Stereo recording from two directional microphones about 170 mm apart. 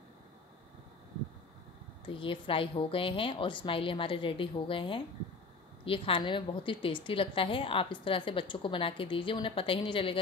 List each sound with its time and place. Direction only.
2.0 s a woman's voice: 30° left (ahead or behind)